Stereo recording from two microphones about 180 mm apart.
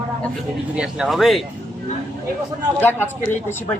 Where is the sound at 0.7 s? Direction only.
5° right (ahead or behind).